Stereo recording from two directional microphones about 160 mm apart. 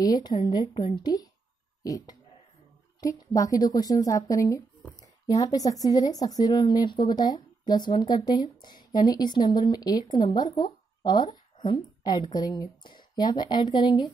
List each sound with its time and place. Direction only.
0.0 s a woman's voice: 25° left (ahead or behind)